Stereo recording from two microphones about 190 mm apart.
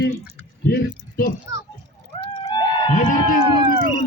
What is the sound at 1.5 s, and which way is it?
Speech, 70° left (ahead or behind).